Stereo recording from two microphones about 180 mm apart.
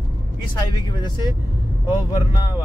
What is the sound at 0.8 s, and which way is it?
Speech, 25° left (ahead or behind).